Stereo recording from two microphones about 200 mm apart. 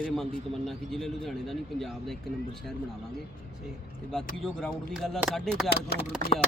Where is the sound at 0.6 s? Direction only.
Centre (ahead or behind).